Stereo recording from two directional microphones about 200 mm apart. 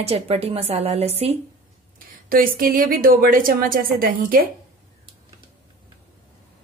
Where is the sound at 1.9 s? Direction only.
45° right (ahead or behind).